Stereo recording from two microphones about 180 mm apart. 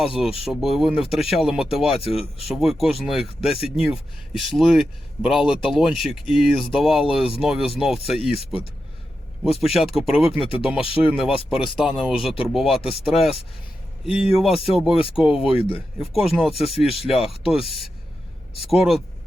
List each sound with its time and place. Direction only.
0.0 s speech: 5° right (ahead or behind)
9.4 s speech: centre (ahead or behind)
10.8 s speech: 30° left (ahead or behind)
11.0 s speech: 5° right (ahead or behind)
15.4 s speech: 30° left (ahead or behind)
16.0 s speech: centre (ahead or behind)
18.7 s speech: centre (ahead or behind)